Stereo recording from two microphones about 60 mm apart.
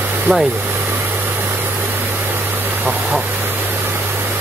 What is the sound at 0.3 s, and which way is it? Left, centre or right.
Speech, right.